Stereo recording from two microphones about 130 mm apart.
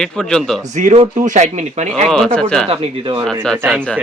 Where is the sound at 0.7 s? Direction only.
60° right (ahead or behind).